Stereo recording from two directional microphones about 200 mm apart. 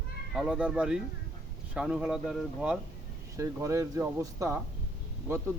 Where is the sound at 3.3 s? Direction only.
15° right (ahead or behind).